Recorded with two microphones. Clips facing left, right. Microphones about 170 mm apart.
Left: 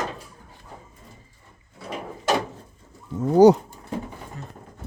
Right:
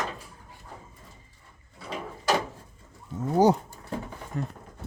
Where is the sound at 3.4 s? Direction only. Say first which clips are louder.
Left 8 dB; 80° left.